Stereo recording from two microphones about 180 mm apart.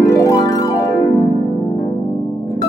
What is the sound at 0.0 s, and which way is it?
Harp, 15° left (ahead or behind).